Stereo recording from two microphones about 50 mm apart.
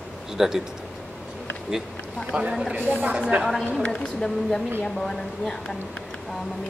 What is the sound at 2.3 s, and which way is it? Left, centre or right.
Speech, centre.